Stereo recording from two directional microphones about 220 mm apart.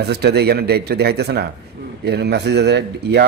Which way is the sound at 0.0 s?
50° right (ahead or behind).